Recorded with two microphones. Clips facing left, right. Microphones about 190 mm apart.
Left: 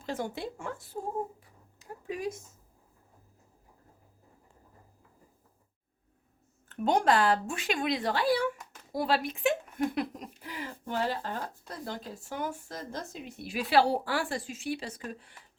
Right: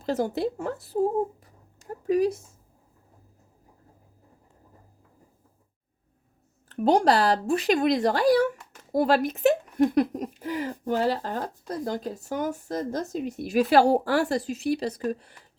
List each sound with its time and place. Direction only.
0.0 s speech: 40° right (ahead or behind)
1.4 s a sound: 40° right (ahead or behind)
6.7 s a woman's voice: 35° right (ahead or behind)